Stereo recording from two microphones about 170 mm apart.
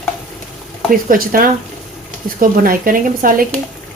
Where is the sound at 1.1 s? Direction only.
55° right (ahead or behind).